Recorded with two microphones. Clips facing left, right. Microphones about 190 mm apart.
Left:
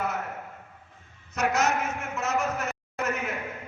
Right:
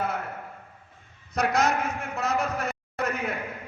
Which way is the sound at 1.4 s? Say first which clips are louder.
Right 1 dB; 35° right (ahead or behind).